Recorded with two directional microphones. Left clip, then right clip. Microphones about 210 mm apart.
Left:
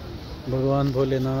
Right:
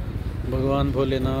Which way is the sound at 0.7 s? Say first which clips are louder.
Even; 15° right (ahead or behind).